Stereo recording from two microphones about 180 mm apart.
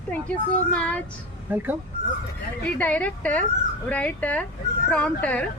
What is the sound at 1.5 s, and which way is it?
Speech, 10° right (ahead or behind).